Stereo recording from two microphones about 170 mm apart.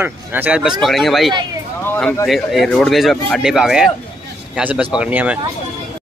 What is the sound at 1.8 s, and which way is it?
Speech, 10° left (ahead or behind).